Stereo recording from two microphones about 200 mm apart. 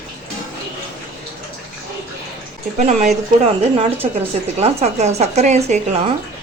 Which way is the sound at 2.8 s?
35° right (ahead or behind).